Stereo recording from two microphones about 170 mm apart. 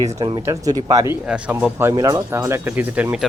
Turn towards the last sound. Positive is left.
turn(degrees=-10)  # may be behind; listen again after turning